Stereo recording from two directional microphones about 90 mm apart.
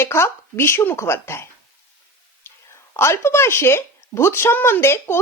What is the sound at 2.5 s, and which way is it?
Whispering, 25° left (ahead or behind).